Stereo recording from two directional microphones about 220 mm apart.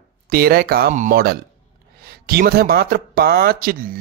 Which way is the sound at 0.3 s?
45° right (ahead or behind).